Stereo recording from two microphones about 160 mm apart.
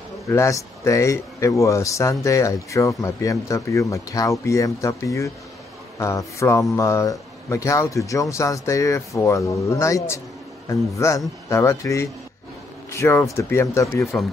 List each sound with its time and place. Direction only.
0.3 s a man's voice: 20° left (ahead or behind)